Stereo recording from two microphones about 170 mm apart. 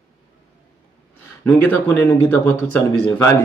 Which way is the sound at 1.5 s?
10° left (ahead or behind).